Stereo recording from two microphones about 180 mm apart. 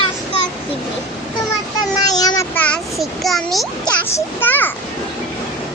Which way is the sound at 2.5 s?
10° left (ahead or behind).